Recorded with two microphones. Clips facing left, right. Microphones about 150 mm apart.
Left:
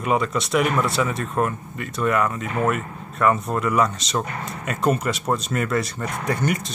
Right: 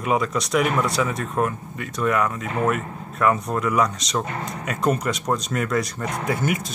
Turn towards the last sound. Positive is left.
turn(degrees=-5)  # may be behind; listen again after turning